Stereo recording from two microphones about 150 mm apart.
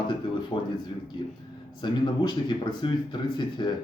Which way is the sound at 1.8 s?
30° left (ahead or behind).